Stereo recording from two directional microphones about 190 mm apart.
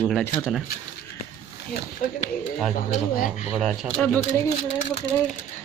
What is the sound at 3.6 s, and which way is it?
Speech, 5° left (ahead or behind).